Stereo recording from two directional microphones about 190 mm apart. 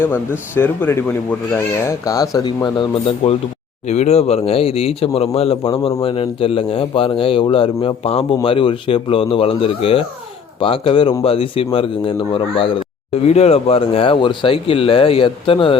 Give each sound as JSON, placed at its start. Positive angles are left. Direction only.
{"t": 0.0, "sound": "speech", "side_deg": 10}